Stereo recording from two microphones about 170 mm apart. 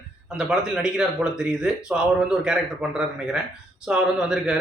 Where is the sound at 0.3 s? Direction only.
5° right (ahead or behind).